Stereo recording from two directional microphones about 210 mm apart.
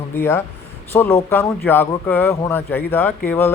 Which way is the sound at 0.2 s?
10° left (ahead or behind).